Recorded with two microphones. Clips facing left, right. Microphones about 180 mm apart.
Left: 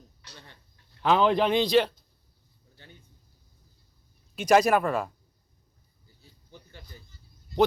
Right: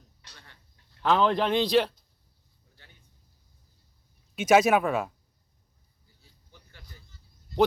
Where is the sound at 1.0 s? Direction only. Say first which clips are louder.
Left 1 dB; 5° left (ahead or behind).